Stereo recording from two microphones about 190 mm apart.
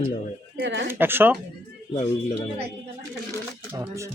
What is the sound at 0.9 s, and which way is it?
Speech, 10° right (ahead or behind).